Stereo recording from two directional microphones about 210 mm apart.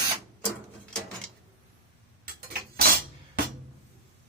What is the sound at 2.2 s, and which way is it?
Tick-tock, 45° right (ahead or behind).